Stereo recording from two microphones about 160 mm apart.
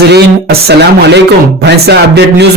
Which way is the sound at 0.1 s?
90° right.